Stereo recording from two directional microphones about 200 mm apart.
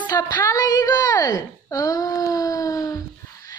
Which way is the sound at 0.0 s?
20° left (ahead or behind).